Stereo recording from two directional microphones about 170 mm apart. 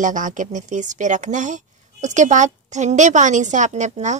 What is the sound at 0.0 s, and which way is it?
A woman's voice, 45° right (ahead or behind).